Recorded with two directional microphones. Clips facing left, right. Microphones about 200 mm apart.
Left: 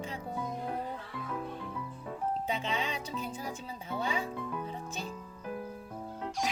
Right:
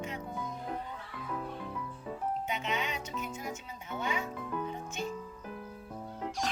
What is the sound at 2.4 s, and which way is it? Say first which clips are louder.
Speech: left 1 dB; 30° left (ahead or behind).